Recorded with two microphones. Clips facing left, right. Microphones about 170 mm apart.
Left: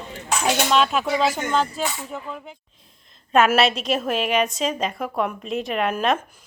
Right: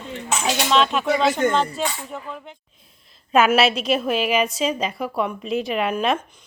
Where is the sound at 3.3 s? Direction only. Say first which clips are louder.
Right 1 dB; centre (ahead or behind).